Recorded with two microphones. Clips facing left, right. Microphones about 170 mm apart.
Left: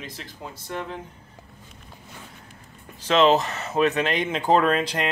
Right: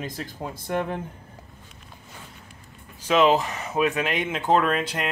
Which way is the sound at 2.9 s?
10° right (ahead or behind).